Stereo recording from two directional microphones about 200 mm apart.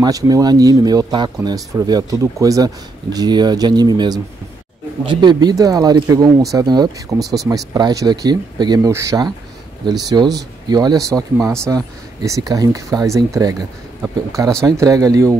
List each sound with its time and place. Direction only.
0.0 s speech: 20° right (ahead or behind)